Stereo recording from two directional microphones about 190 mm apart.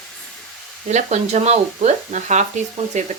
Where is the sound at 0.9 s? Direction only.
35° right (ahead or behind).